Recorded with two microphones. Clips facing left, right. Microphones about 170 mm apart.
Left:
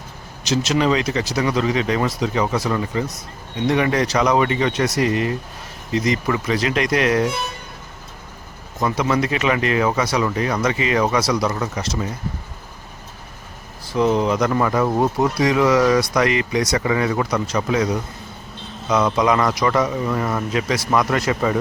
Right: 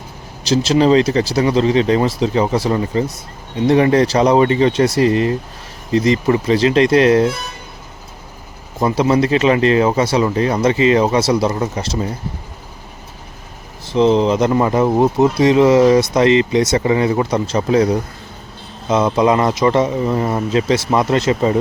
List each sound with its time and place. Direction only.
0.4 s speech: 30° right (ahead or behind)
8.8 s speech: 30° right (ahead or behind)
13.9 s speech: 25° right (ahead or behind)